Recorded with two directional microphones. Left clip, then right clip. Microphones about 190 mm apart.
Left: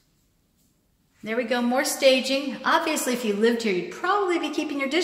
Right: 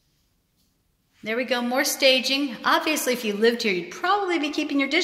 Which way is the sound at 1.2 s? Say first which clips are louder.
Even; 25° right (ahead or behind).